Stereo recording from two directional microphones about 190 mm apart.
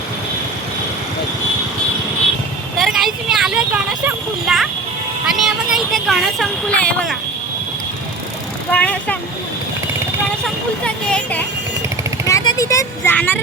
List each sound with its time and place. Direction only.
2.7 s a sound: centre (ahead or behind)
8.7 s speech: 5° left (ahead or behind)
10.4 s speech: 5° left (ahead or behind)
12.3 s speech: 15° left (ahead or behind)